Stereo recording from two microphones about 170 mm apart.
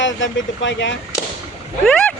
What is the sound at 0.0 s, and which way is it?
Speech, 90° left.